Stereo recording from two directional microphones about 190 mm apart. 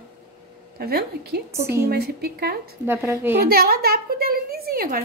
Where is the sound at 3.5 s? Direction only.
55° right (ahead or behind).